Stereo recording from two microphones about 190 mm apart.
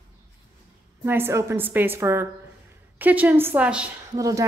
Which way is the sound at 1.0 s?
10° right (ahead or behind).